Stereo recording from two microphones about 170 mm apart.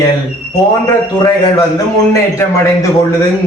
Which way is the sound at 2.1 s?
20° left (ahead or behind).